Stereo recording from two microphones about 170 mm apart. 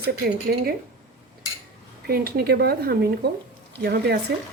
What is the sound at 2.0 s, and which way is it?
Speech, 65° right (ahead or behind).